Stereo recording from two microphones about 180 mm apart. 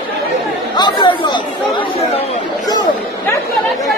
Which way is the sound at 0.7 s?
25° left (ahead or behind).